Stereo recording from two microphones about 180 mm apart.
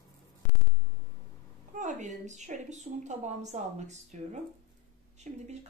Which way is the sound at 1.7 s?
45° right (ahead or behind).